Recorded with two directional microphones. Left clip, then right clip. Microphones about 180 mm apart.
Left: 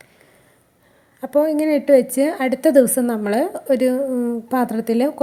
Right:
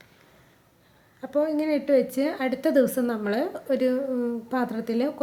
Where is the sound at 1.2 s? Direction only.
35° left (ahead or behind).